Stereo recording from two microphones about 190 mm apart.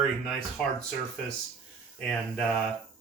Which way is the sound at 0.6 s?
5° left (ahead or behind).